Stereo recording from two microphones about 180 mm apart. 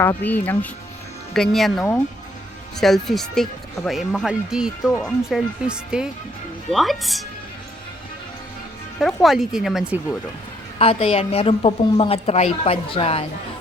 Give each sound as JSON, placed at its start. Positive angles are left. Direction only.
{"t": 0.0, "sound": "speech", "side_deg": 10}
{"t": 9.0, "sound": "speech", "side_deg": 0}
{"t": 10.8, "sound": "a woman's voice", "side_deg": 35}